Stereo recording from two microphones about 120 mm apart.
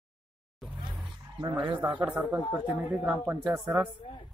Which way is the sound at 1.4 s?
40° right (ahead or behind).